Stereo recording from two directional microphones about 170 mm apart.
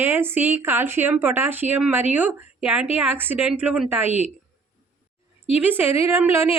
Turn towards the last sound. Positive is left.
turn(degrees=-15)  # may be behind; listen again after turning